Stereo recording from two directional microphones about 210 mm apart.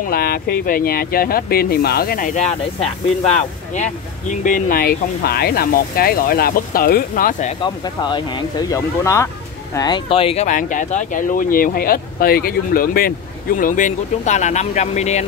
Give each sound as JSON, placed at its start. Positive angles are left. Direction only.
{"t": 0.1, "sound": "speech", "side_deg": 45}
{"t": 7.6, "sound": "speech", "side_deg": 20}